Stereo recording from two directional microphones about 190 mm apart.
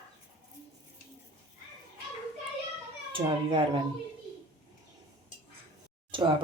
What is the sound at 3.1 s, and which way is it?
Speech, 25° right (ahead or behind).